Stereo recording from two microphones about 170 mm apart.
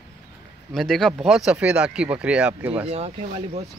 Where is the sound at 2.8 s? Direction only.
35° right (ahead or behind).